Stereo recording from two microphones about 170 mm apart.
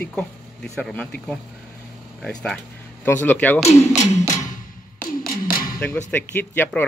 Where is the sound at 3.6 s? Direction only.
40° left (ahead or behind).